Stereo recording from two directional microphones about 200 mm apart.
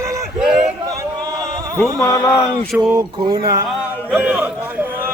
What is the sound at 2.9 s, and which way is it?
Speech, 20° right (ahead or behind).